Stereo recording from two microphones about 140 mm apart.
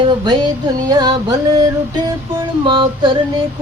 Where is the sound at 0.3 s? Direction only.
30° right (ahead or behind).